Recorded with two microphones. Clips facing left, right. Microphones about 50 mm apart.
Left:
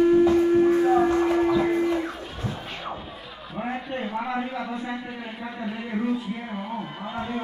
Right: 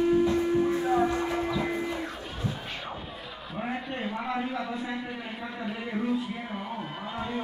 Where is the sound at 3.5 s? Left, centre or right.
Centre.